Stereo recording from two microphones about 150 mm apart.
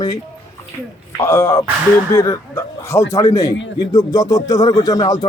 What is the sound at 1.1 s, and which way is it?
Speech, 20° left (ahead or behind).